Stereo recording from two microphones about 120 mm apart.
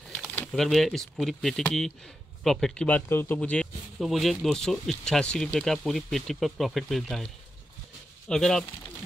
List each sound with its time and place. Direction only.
0.5 s speech: centre (ahead or behind)
3.1 s speech: 20° left (ahead or behind)
3.3 s speech: 10° left (ahead or behind)
8.3 s speech: 5° left (ahead or behind)